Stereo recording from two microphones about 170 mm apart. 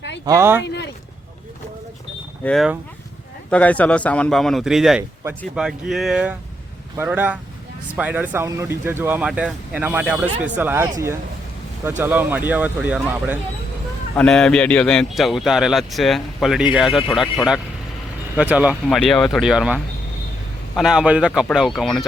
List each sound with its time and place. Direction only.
0.3 s speech: 15° right (ahead or behind)
0.6 s a sound: 90° left
2.4 s a man's voice: centre (ahead or behind)
14.2 s a man's voice: 5° left (ahead or behind)